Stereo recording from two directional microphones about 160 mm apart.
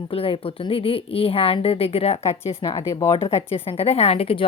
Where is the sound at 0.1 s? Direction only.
35° left (ahead or behind).